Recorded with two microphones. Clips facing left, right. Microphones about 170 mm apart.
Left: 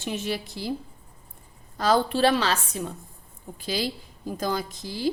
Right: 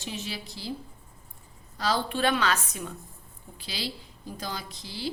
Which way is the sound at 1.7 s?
50° left (ahead or behind).